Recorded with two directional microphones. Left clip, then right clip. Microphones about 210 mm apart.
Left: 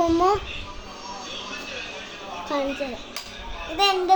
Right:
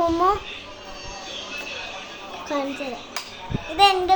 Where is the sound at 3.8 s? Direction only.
20° right (ahead or behind).